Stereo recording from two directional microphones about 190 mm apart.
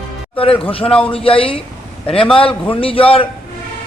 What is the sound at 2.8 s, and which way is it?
Speech, 30° left (ahead or behind).